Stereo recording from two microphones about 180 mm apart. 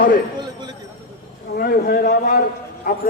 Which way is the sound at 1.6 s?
55° left (ahead or behind).